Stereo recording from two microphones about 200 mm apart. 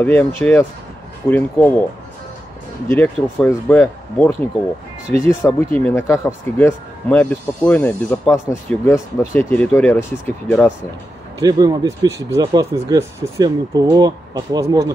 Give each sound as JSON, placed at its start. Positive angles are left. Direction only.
{"t": 0.0, "sound": "speech", "side_deg": 10}
{"t": 2.9, "sound": "speech", "side_deg": 5}
{"t": 11.4, "sound": "speech", "side_deg": -20}